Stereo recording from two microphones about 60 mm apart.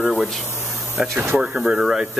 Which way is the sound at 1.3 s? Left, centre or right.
Centre.